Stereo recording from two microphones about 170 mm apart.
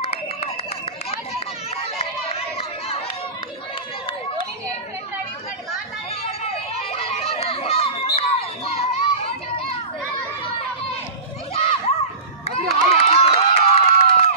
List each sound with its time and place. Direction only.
0.0 s a sound: 35° left (ahead or behind)
2.0 s chatter: 35° left (ahead or behind)
6.9 s crowd: 35° left (ahead or behind)
11.5 s children playing: 35° left (ahead or behind)
12.4 s crowd: 35° left (ahead or behind)